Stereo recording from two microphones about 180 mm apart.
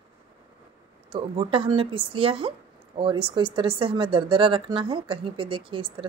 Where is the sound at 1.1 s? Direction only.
30° right (ahead or behind).